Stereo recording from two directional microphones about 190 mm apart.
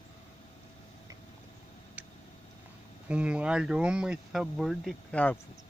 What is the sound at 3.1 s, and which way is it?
Speech, 5° right (ahead or behind).